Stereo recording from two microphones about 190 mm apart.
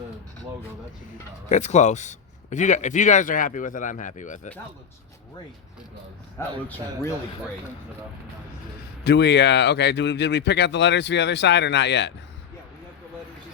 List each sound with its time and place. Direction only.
1.5 s speech: 40° left (ahead or behind)
6.4 s speech: 15° left (ahead or behind)
9.0 s speech: 65° left (ahead or behind)